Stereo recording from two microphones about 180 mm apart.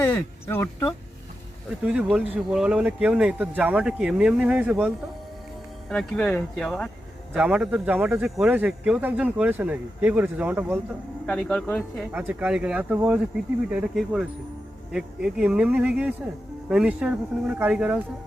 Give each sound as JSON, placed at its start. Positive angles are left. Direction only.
{"t": 0.0, "sound": "speech", "side_deg": 10}
{"t": 1.8, "sound": "speech", "side_deg": -5}
{"t": 5.9, "sound": "speech", "side_deg": 5}
{"t": 7.3, "sound": "speech", "side_deg": -5}
{"t": 11.3, "sound": "speech", "side_deg": 5}
{"t": 12.1, "sound": "speech", "side_deg": -10}